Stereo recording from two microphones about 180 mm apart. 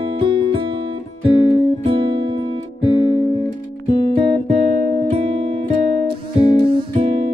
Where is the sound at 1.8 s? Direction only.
30° right (ahead or behind).